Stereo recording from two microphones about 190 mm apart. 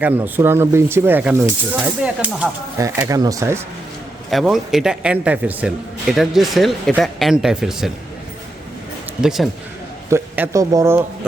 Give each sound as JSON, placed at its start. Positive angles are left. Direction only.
{"t": 0.0, "sound": "speech", "side_deg": -10}
{"t": 2.8, "sound": "speech", "side_deg": -15}
{"t": 4.3, "sound": "a man's voice", "side_deg": 0}
{"t": 9.2, "sound": "a man's voice", "side_deg": 0}
{"t": 10.1, "sound": "speech", "side_deg": -10}